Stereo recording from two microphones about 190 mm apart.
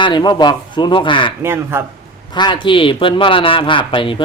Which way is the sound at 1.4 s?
10° right (ahead or behind).